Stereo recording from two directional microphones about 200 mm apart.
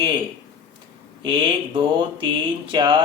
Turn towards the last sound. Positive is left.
turn(degrees=-25)  # may be behind; listen again after turning